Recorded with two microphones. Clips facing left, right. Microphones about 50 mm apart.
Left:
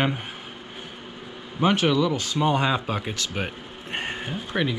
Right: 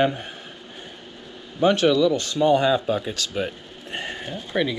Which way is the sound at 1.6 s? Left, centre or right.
Left.